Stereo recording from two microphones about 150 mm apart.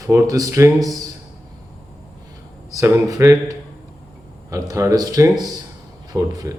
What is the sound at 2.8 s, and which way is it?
Speech, 20° right (ahead or behind).